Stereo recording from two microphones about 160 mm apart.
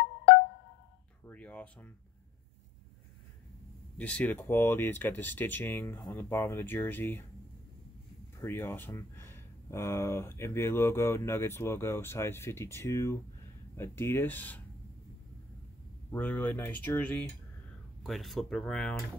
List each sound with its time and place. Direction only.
1.2 s speech: 10° left (ahead or behind)
4.0 s speech: 10° left (ahead or behind)
8.4 s speech: 15° left (ahead or behind)
16.1 s speech: 10° left (ahead or behind)